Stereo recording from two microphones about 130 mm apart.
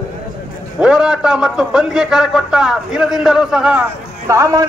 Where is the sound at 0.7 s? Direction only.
5° right (ahead or behind).